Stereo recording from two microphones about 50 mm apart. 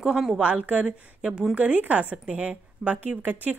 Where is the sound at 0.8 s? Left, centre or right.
Centre.